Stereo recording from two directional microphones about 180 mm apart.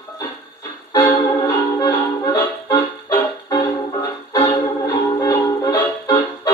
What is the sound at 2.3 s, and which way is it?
Music, 20° left (ahead or behind).